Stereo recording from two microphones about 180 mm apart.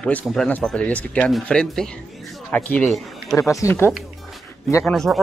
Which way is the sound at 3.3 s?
15° left (ahead or behind).